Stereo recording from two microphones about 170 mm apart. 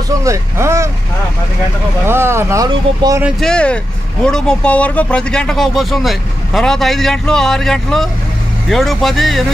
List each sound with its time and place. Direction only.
0.2 s vehicle: 15° right (ahead or behind)
2.0 s speech: 15° right (ahead or behind)
3.3 s speech: 5° left (ahead or behind)